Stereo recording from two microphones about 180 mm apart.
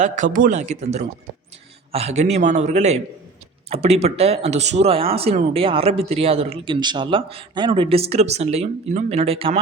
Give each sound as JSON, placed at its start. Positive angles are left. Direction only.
{"t": 0.3, "sound": "speech", "side_deg": -45}